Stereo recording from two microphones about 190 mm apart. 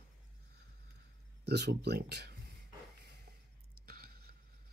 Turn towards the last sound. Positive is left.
turn(degrees=-55)  # may be behind; listen again after turning